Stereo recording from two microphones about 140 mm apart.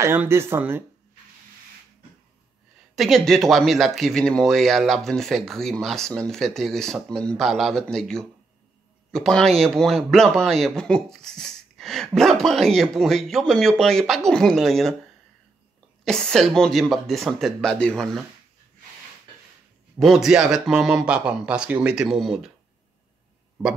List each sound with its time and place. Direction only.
0.0 s speech: 15° right (ahead or behind)
3.0 s speech: centre (ahead or behind)
16.0 s speech: 5° left (ahead or behind)
20.0 s speech: centre (ahead or behind)